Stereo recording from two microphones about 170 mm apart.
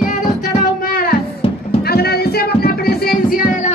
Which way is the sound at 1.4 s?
30° left (ahead or behind).